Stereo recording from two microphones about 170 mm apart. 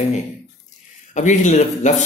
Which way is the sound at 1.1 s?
45° left (ahead or behind).